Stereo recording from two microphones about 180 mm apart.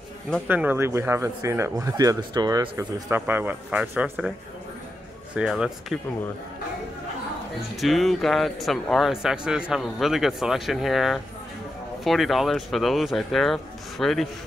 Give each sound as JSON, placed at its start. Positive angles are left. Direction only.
{"t": 0.5, "sound": "speech", "side_deg": -10}
{"t": 2.8, "sound": "speech", "side_deg": -10}
{"t": 5.3, "sound": "speech", "side_deg": -5}
{"t": 7.7, "sound": "speech", "side_deg": 0}